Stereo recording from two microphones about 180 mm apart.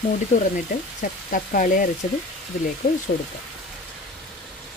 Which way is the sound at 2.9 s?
40° left (ahead or behind).